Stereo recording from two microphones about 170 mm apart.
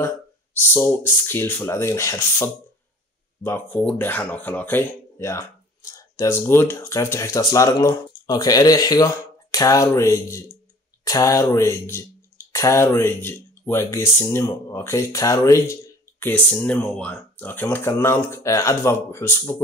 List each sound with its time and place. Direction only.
0.6 s speech: 10° left (ahead or behind)